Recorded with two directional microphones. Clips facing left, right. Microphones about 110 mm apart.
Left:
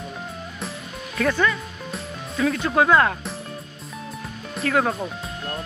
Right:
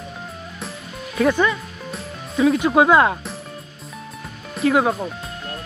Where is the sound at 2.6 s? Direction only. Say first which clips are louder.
Right 1 dB; 15° right (ahead or behind).